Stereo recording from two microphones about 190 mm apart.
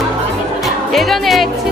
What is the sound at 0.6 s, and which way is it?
Music, centre (ahead or behind).